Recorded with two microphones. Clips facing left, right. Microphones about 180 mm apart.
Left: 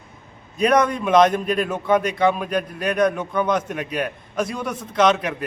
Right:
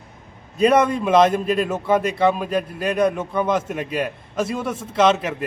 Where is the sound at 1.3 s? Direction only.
25° right (ahead or behind).